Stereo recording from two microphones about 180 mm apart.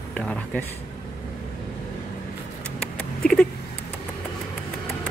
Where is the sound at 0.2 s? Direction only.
5° left (ahead or behind).